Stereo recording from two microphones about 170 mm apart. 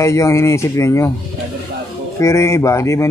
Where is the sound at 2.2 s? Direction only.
15° left (ahead or behind).